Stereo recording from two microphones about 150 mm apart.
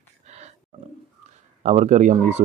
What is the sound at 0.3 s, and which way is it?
Wild animals, 50° right (ahead or behind).